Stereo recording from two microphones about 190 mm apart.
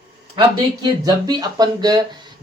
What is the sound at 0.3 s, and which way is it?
Speech, 20° right (ahead or behind).